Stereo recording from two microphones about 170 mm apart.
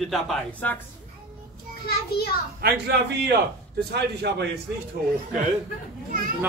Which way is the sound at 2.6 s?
70° right (ahead or behind).